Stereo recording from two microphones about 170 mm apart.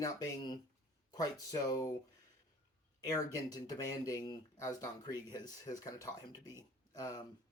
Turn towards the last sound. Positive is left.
turn(degrees=20)  # may be behind; listen again after turning